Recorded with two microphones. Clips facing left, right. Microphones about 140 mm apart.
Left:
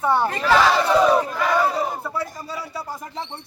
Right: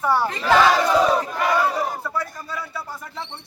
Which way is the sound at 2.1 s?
30° left (ahead or behind).